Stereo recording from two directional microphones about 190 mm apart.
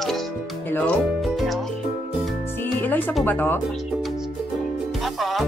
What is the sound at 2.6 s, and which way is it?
Music, 10° left (ahead or behind).